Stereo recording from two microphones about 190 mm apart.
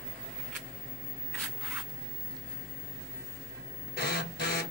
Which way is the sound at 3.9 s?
55° left (ahead or behind).